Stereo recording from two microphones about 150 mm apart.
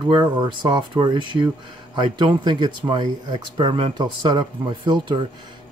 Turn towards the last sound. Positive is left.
turn(degrees=-30)  # may be behind; listen again after turning